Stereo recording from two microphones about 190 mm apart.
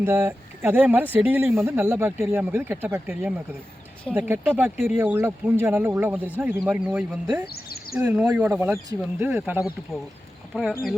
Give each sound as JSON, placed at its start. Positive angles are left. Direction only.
{"t": 0.0, "sound": "speech", "side_deg": -10}
{"t": 7.5, "sound": "a sound", "side_deg": 55}
{"t": 7.9, "sound": "speech", "side_deg": -10}